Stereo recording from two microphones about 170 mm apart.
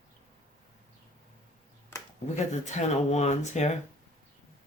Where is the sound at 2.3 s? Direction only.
45° left (ahead or behind).